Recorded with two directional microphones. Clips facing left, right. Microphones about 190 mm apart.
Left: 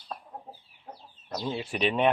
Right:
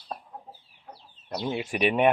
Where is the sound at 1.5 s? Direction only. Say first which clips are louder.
Right 3 dB; 10° right (ahead or behind).